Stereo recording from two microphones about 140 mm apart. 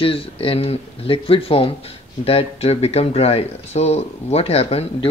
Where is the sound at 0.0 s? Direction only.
40° left (ahead or behind).